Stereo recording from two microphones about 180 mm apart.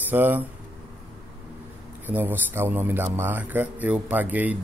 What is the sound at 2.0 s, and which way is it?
A man's voice, 10° right (ahead or behind).